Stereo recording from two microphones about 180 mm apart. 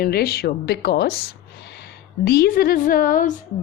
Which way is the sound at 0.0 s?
55° left (ahead or behind).